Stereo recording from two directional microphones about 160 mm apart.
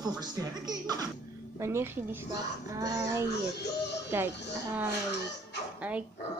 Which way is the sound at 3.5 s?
90° left.